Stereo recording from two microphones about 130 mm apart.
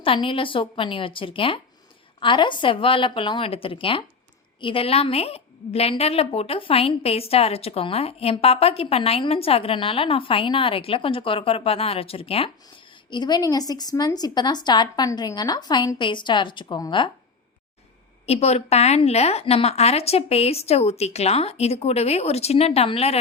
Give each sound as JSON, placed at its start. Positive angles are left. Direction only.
{"t": 0.0, "sound": "a woman's voice", "side_deg": 45}
{"t": 13.1, "sound": "a woman's voice", "side_deg": 35}
{"t": 18.3, "sound": "a woman's voice", "side_deg": 55}